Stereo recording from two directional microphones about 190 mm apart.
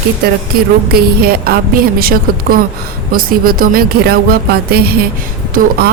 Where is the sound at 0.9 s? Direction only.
55° right (ahead or behind).